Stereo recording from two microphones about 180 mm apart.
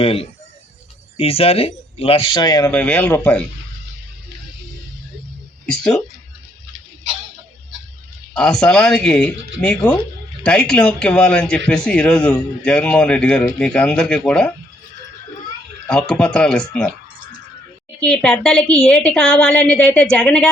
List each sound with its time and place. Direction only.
0.0 s speech: 30° left (ahead or behind)
2.7 s speech: 5° left (ahead or behind)
8.3 s a man's voice: 5° left (ahead or behind)
15.9 s a man's voice: 5° left (ahead or behind)
18.0 s a man's voice: 5° left (ahead or behind)